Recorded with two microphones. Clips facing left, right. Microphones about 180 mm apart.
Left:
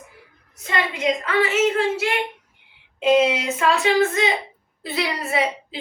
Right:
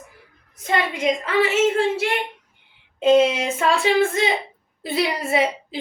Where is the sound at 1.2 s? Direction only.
30° right (ahead or behind).